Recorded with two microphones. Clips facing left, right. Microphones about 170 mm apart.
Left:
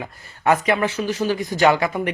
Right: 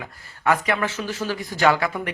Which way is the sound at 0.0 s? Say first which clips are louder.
Left 3 dB; 20° left (ahead or behind).